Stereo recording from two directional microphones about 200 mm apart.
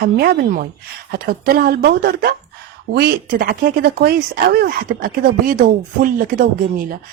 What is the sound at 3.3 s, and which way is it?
Speech, 50° right (ahead or behind).